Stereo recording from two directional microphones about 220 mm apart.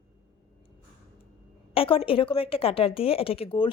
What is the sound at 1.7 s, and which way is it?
A woman's voice, 25° left (ahead or behind).